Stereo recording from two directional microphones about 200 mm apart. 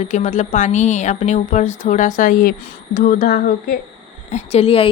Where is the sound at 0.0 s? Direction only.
35° left (ahead or behind).